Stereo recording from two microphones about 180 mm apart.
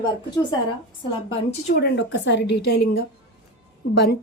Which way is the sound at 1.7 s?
70° left (ahead or behind).